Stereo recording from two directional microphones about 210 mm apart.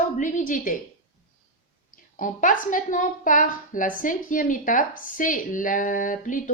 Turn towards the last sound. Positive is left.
turn(degrees=40)  # may be behind; listen again after turning